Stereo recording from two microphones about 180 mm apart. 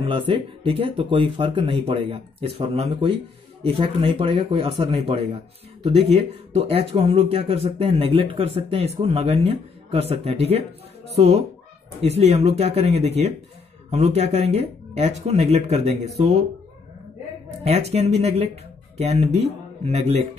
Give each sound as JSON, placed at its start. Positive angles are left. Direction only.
{"t": 0.3, "sound": "speech", "side_deg": -30}
{"t": 17.6, "sound": "speech", "side_deg": -35}